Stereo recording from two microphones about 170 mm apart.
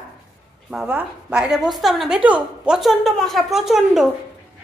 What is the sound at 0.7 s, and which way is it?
A woman's voice, 5° right (ahead or behind).